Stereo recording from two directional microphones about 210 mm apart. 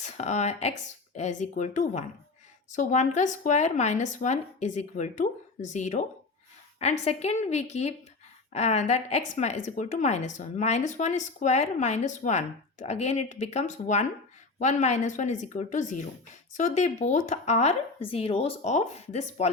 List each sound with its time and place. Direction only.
0.0 s a woman's voice: 35° left (ahead or behind)